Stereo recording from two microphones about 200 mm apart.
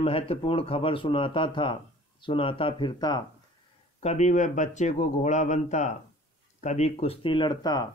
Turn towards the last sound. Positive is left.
turn(degrees=20)  # may be behind; listen again after turning